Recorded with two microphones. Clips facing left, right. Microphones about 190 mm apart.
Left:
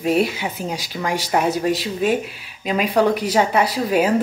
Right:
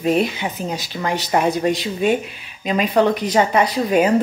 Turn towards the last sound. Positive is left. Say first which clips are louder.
# right 2 dB
turn(degrees=5)  # may be behind; listen again after turning